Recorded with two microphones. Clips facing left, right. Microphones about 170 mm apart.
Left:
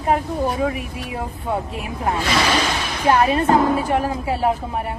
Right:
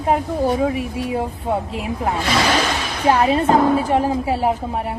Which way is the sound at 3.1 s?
20° right (ahead or behind).